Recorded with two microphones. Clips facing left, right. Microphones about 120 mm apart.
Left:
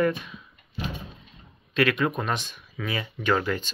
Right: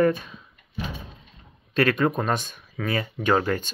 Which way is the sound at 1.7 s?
40° right (ahead or behind).